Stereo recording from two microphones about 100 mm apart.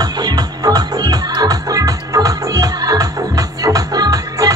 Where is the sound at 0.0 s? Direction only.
40° right (ahead or behind).